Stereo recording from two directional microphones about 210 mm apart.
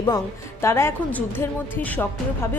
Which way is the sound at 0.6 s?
10° left (ahead or behind).